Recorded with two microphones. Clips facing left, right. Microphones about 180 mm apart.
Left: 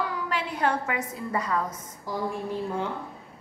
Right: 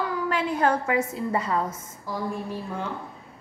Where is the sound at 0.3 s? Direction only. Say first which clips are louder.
Right 4 dB; 45° right (ahead or behind).